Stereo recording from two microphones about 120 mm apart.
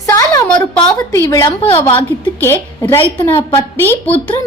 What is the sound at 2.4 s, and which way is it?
A woman's voice, 20° left (ahead or behind).